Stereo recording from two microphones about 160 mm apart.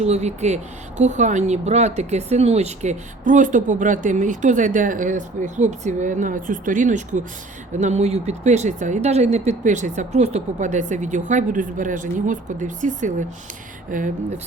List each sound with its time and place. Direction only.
0.0 s speech: 45° right (ahead or behind)